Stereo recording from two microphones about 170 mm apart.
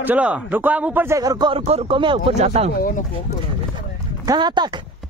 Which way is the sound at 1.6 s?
40° right (ahead or behind).